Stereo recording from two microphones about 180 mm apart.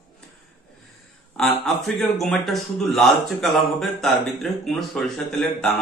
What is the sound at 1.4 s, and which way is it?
A man's voice, centre (ahead or behind).